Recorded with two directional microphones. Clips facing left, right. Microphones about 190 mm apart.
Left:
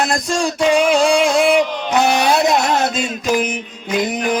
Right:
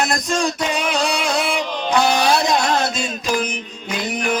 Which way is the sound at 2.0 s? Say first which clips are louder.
Left 3 dB; 20° left (ahead or behind).